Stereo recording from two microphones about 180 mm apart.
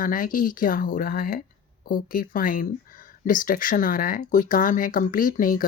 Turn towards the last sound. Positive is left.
turn(degrees=50)  # may be behind; listen again after turning